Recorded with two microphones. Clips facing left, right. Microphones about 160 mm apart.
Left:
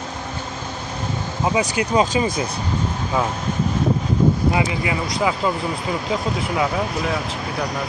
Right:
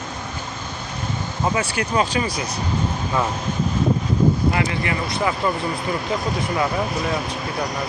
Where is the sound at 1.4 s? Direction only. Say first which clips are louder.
Left 2 dB; 15° left (ahead or behind).